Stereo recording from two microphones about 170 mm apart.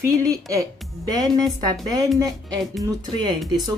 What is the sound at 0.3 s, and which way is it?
A woman's voice, 20° right (ahead or behind).